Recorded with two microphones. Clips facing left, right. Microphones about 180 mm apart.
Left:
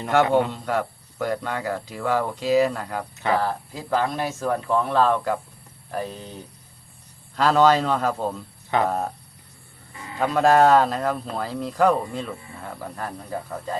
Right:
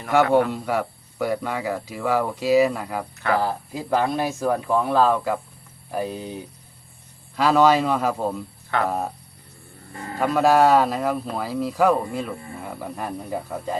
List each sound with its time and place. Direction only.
0.3 s a man's voice: 20° left (ahead or behind)
0.5 s speech: 5° right (ahead or behind)
9.9 s speech: 45° right (ahead or behind)
10.2 s speech: 5° right (ahead or behind)